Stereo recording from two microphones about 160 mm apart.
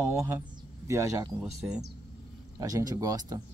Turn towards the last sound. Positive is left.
turn(degrees=-20)  # may be behind; listen again after turning